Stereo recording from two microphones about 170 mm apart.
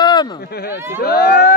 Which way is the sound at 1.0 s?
65° left (ahead or behind).